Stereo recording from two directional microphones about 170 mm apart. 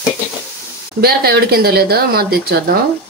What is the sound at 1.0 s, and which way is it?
Speech, 65° right (ahead or behind).